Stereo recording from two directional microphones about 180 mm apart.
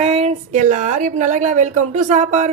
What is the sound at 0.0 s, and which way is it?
A woman's voice, 35° right (ahead or behind).